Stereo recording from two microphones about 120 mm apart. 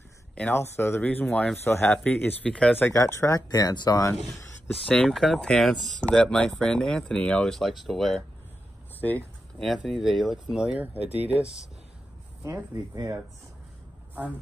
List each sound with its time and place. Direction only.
0.4 s speech: 20° left (ahead or behind)
2.9 s speech: 25° left (ahead or behind)
4.7 s speech: 5° left (ahead or behind)
9.6 s speech: centre (ahead or behind)
12.9 s speech: 30° right (ahead or behind)